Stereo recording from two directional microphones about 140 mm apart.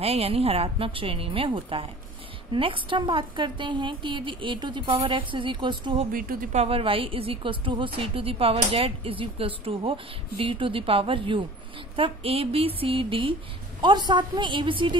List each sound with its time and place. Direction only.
0.0 s a woman's voice: 45° right (ahead or behind)
6.1 s speech: 90° right
6.5 s a woman's voice: 45° right (ahead or behind)